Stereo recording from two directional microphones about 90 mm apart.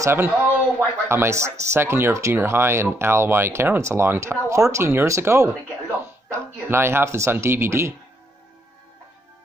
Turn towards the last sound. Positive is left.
turn(degrees=-25)  # may be behind; listen again after turning